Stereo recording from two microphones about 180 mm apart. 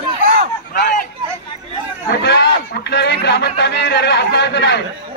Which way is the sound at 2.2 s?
70° left (ahead or behind).